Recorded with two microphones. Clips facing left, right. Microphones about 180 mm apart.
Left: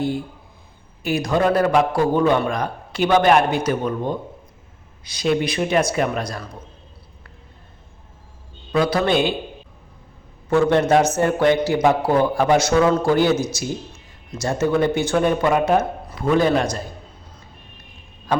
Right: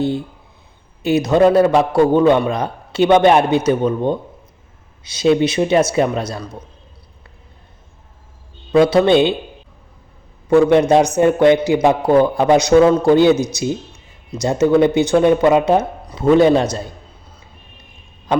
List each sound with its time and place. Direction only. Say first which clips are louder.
1.0 s speech: right 6 dB; 25° right (ahead or behind)
8.7 s speech: right 7 dB; 25° right (ahead or behind)
10.5 s speech: right 5 dB; 15° right (ahead or behind)
18.3 s frog: right 4 dB; 20° right (ahead or behind)